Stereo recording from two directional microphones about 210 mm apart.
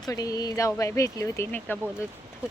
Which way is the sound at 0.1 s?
15° left (ahead or behind).